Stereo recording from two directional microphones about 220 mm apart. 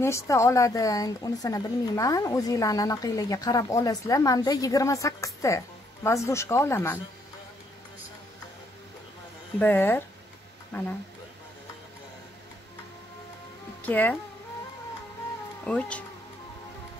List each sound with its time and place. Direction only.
0.0 s speech: 10° left (ahead or behind)
9.6 s speech: 10° left (ahead or behind)
13.8 s speech: 10° left (ahead or behind)
15.6 s speech: 5° left (ahead or behind)